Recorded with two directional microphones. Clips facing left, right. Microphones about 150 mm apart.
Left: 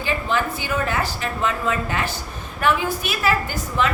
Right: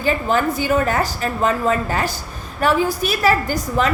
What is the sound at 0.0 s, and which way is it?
A woman's voice, 45° right (ahead or behind).